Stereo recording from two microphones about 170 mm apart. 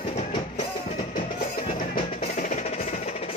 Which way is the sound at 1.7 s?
50° left (ahead or behind).